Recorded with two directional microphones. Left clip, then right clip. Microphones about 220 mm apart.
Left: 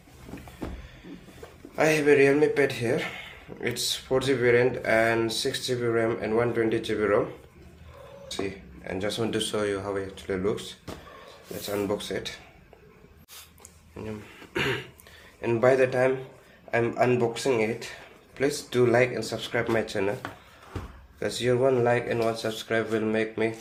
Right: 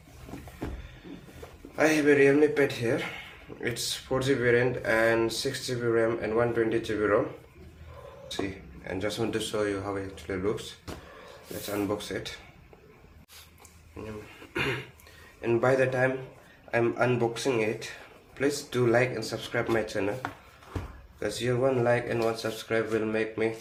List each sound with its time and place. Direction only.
1.7 s speech: 35° left (ahead or behind)
8.8 s speech: 30° left (ahead or behind)
11.6 s speech: 30° left (ahead or behind)
14.5 s a sound: 25° left (ahead or behind)
15.4 s speech: 30° left (ahead or behind)
21.2 s speech: 30° left (ahead or behind)